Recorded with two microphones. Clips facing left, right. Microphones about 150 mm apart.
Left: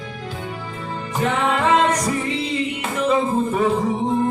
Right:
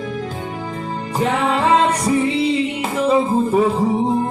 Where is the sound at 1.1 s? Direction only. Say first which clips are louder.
Right 2 dB; 35° right (ahead or behind).